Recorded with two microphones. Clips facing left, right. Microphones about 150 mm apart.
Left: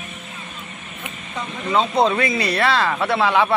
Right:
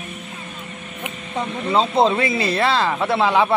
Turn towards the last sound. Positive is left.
turn(degrees=-25)  # may be behind; listen again after turning